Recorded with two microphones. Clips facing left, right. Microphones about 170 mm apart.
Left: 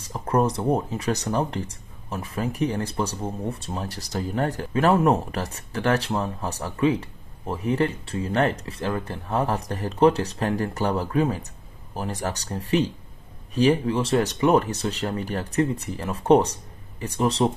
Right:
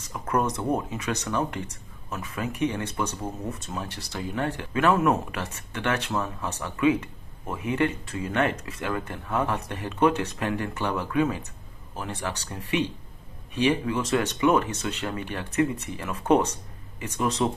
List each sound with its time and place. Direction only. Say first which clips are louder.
0.0 s speech: left 4 dB; 30° left (ahead or behind)